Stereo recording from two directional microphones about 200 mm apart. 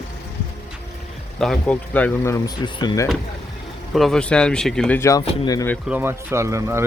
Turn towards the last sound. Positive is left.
turn(degrees=-15)  # may be behind; listen again after turning